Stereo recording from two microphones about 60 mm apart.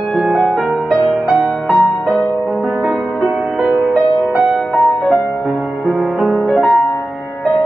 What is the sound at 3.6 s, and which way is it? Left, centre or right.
Music, right.